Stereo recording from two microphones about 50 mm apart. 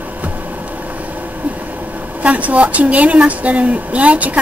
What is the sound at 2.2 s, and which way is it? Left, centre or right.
A woman's voice, right.